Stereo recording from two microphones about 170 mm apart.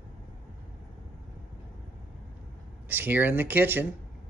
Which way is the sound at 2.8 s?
10° right (ahead or behind).